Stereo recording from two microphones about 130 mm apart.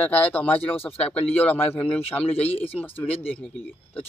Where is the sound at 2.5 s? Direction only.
50° left (ahead or behind).